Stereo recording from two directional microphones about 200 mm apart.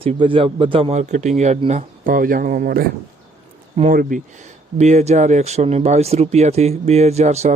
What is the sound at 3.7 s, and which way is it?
Speech, 30° right (ahead or behind).